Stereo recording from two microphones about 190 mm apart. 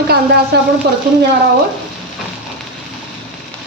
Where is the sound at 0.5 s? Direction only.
60° right (ahead or behind).